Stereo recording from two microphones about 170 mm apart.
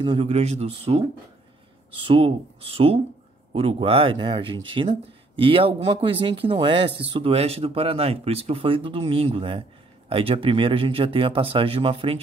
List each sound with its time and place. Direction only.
0.0 s speech: 30° right (ahead or behind)